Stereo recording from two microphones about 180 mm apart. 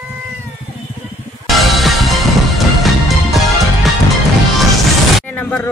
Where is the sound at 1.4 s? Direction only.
Centre (ahead or behind).